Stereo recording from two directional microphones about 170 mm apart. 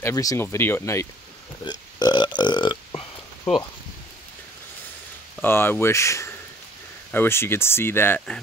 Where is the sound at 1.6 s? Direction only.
25° left (ahead or behind).